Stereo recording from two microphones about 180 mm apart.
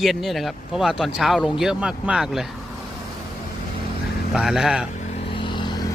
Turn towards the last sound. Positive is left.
turn(degrees=25)  # may be behind; listen again after turning